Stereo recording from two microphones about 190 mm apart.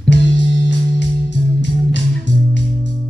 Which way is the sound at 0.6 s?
65° left (ahead or behind).